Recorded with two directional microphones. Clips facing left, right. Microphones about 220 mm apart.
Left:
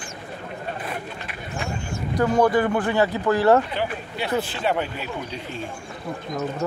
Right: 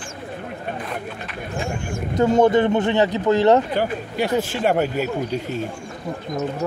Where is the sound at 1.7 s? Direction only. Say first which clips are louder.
Right 3 dB; 50° right (ahead or behind).